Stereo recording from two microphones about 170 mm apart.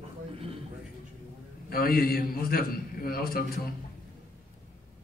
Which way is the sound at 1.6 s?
60° left (ahead or behind).